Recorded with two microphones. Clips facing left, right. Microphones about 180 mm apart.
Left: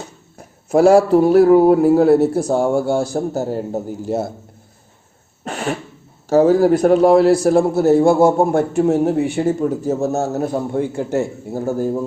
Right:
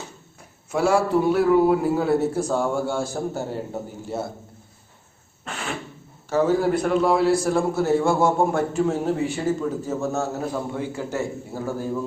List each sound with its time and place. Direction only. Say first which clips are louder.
0.3 s a man's voice: left 10 dB; 40° left (ahead or behind)
5.5 s cough: left 9 dB; 40° left (ahead or behind)
6.2 s a man's voice: left 8 dB; 40° left (ahead or behind)
8.7 s a man's voice: left 7 dB; 60° left (ahead or behind); by 12.0 s 45° left (ahead or behind)